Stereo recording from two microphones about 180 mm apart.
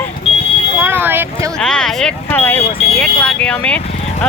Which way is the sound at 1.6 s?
5° left (ahead or behind).